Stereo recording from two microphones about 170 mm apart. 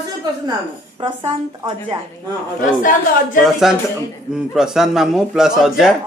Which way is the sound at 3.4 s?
Centre (ahead or behind).